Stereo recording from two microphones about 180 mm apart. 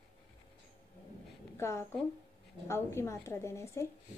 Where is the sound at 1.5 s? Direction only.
15° left (ahead or behind).